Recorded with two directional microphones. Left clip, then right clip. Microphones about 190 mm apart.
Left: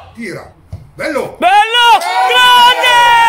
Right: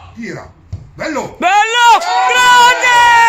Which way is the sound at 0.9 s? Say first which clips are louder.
Left 3 dB; 25° right (ahead or behind).